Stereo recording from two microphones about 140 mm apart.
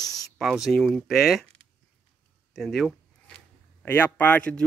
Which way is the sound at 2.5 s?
Centre (ahead or behind).